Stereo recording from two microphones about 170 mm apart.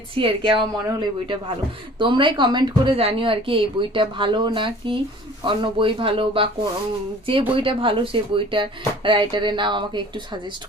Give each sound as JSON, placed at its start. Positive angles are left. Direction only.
{"t": 0.2, "sound": "a woman's voice", "side_deg": -30}
{"t": 7.5, "sound": "a woman's voice", "side_deg": -30}